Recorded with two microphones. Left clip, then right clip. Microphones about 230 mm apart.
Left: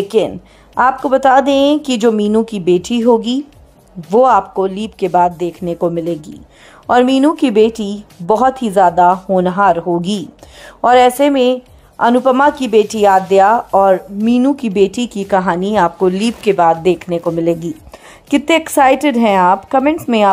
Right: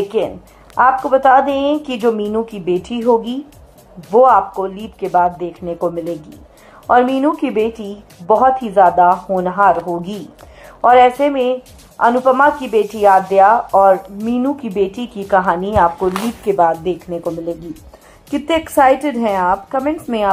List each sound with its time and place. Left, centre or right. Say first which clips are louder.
0.1 s speech: left 4 dB; left